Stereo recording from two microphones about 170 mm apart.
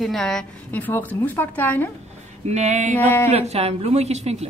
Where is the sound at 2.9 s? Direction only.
10° left (ahead or behind).